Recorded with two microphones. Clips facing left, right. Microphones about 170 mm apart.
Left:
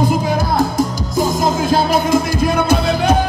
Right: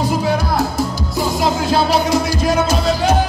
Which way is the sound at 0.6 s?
45° left (ahead or behind).